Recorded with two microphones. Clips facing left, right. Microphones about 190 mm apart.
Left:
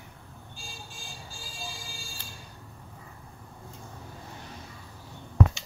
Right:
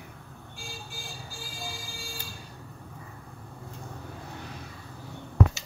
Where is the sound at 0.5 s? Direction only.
65° right (ahead or behind).